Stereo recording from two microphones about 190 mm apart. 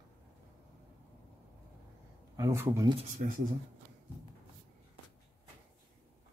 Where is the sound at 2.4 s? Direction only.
15° right (ahead or behind).